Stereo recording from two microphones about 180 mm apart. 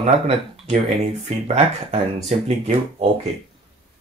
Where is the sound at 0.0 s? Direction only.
35° right (ahead or behind).